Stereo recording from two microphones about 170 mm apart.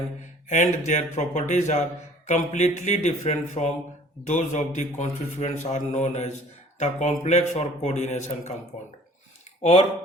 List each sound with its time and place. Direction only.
0.4 s speech: 45° left (ahead or behind)